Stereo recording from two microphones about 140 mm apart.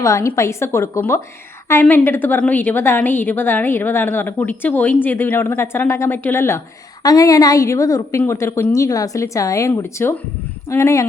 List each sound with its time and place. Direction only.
0.0 s a woman's voice: 20° left (ahead or behind)